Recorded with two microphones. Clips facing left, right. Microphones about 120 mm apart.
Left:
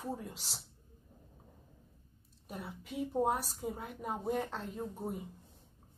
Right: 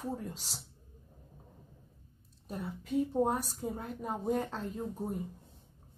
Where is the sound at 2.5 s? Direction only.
10° left (ahead or behind).